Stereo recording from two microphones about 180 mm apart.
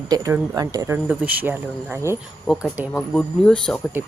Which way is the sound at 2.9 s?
5° left (ahead or behind).